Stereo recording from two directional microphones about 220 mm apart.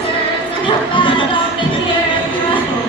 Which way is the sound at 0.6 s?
20° left (ahead or behind).